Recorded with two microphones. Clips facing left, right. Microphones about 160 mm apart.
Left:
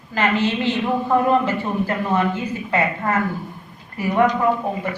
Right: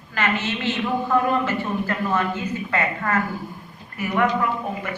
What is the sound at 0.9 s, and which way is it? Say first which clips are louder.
A woman's voice: left 3 dB; 25° left (ahead or behind).